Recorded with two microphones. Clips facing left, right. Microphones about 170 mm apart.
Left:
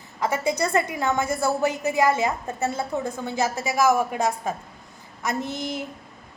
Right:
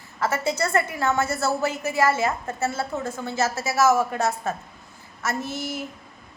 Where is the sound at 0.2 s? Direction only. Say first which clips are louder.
Left 1 dB; 15° left (ahead or behind).